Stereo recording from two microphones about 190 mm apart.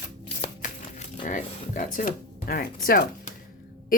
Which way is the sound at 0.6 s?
40° left (ahead or behind).